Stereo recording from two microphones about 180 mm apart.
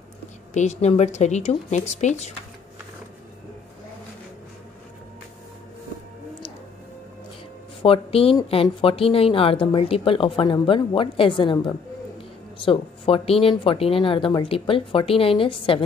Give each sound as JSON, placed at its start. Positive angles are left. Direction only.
{"t": 0.5, "sound": "speech", "side_deg": 40}
{"t": 7.8, "sound": "a woman's voice", "side_deg": 30}